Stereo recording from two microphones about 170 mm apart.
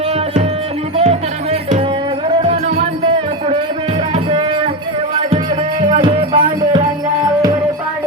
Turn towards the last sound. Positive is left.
turn(degrees=-30)  # may be behind; listen again after turning